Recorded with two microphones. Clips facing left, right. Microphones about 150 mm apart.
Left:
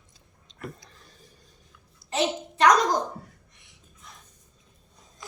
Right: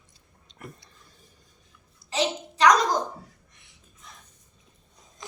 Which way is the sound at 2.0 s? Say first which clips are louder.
Left 1 dB; 50° left (ahead or behind).